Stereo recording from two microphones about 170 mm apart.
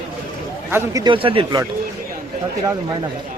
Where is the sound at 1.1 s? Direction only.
30° right (ahead or behind).